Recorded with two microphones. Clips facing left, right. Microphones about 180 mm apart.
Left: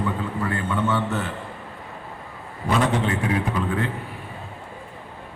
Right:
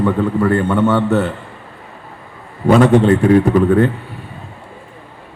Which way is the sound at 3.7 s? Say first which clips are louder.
Right 13 dB; 50° right (ahead or behind).